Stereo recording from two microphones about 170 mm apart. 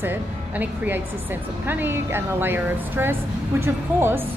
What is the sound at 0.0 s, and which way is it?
Speech, 10° right (ahead or behind).